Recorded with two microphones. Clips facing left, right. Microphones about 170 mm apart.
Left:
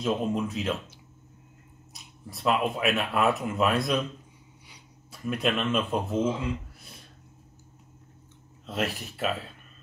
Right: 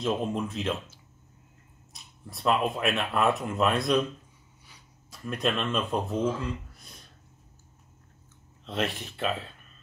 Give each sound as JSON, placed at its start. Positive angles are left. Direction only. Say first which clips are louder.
{"t": 0.0, "sound": "speech", "louder": "left 1 dB", "side_deg": 0}
{"t": 2.2, "sound": "speech", "louder": "even", "side_deg": 0}
{"t": 4.6, "sound": "a sound", "louder": "even", "side_deg": 15}
{"t": 5.3, "sound": "speech", "louder": "left 2 dB", "side_deg": 5}
{"t": 8.6, "sound": "speech", "louder": "even", "side_deg": 0}